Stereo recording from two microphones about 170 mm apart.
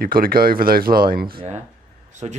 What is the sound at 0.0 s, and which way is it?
Speech, 60° right (ahead or behind).